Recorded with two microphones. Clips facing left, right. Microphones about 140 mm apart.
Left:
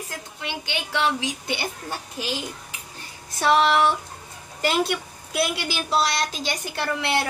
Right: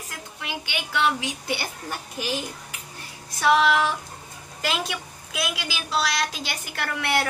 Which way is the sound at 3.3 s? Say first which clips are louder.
Left 1 dB; 30° left (ahead or behind).